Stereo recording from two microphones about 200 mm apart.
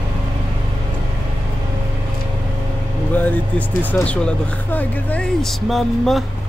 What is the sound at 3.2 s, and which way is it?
Speech, 10° left (ahead or behind).